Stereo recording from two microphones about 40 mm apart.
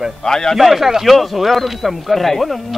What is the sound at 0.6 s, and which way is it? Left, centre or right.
Speech, centre.